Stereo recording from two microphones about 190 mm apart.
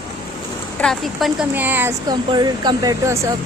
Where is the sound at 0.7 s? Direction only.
5° left (ahead or behind).